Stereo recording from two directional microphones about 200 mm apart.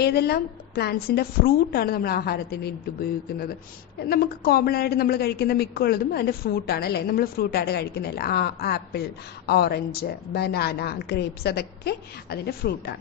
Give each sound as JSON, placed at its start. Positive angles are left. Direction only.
{"t": 0.0, "sound": "a woman's voice", "side_deg": 50}
{"t": 4.1, "sound": "a woman's voice", "side_deg": 50}